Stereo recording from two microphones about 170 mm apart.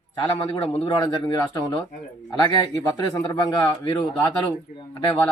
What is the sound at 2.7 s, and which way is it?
Speech, 20° left (ahead or behind).